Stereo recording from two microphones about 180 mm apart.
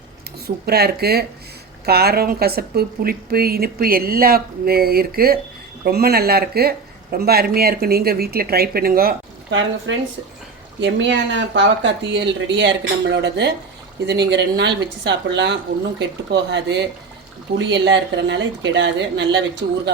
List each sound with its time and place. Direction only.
0.4 s speech: 60° right (ahead or behind)
17.5 s speech: 30° right (ahead or behind)
17.8 s speech: 80° right